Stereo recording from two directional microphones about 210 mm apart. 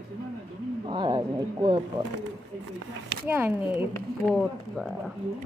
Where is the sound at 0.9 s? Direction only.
20° right (ahead or behind).